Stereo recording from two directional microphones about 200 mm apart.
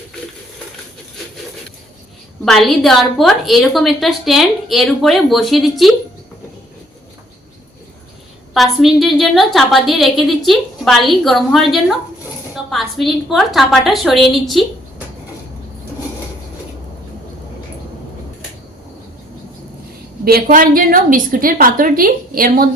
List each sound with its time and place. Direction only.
2.4 s a woman's voice: centre (ahead or behind)
8.5 s a woman's voice: centre (ahead or behind)
20.2 s a woman's voice: 45° right (ahead or behind)